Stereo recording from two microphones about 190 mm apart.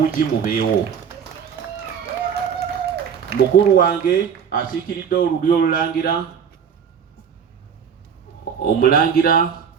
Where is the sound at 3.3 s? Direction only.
55° right (ahead or behind).